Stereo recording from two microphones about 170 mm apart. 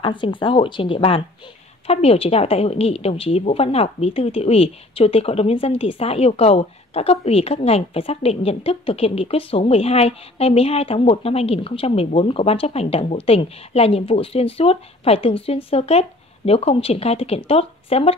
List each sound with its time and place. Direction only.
0.0 s a woman's voice: 30° left (ahead or behind)